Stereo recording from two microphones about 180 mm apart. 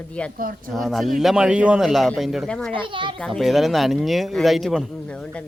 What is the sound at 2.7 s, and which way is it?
Speech, 30° right (ahead or behind).